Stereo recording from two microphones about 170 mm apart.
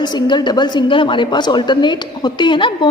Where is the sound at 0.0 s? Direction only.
25° left (ahead or behind).